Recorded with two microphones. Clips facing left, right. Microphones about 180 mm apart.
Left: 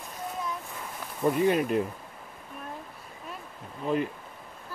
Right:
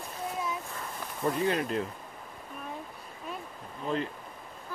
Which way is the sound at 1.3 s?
10° left (ahead or behind).